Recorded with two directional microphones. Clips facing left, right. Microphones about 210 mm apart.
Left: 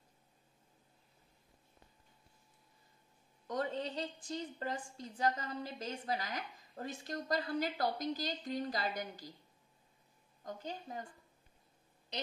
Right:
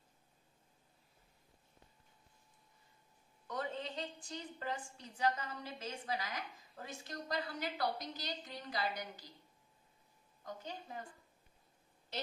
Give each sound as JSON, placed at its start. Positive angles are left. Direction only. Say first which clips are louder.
{"t": 3.4, "sound": "a woman's voice", "louder": "left 4 dB", "side_deg": 45}
{"t": 10.4, "sound": "a woman's voice", "louder": "left 3 dB", "side_deg": 45}
{"t": 12.1, "sound": "a sound", "louder": "left 1 dB", "side_deg": 20}